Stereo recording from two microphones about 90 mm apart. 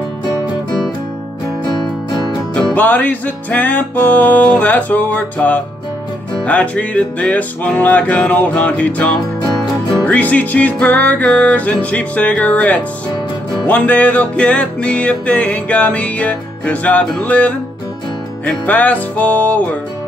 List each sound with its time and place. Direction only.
2.5 s music: 20° left (ahead or behind)